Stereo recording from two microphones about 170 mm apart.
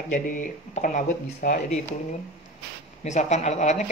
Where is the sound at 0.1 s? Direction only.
50° left (ahead or behind).